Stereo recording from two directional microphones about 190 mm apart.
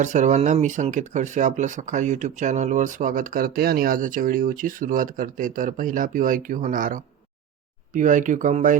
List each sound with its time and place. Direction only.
0.0 s speech: 40° right (ahead or behind)